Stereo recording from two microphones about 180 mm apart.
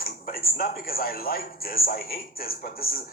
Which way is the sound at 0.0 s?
55° left (ahead or behind).